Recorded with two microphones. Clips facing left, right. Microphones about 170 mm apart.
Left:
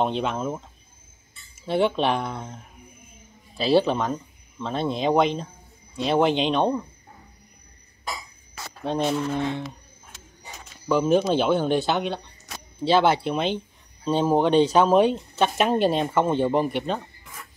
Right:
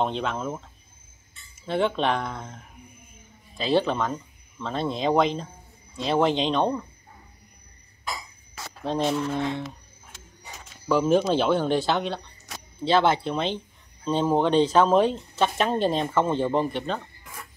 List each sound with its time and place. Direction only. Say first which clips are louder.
0.0 s speech: left 2 dB; 15° left (ahead or behind)
1.7 s speech: left 2 dB; 5° left (ahead or behind)
3.5 s speech: left 3 dB; 10° left (ahead or behind)
8.8 s speech: left 1 dB; 10° left (ahead or behind)
10.9 s speech: left 1 dB; 5° left (ahead or behind)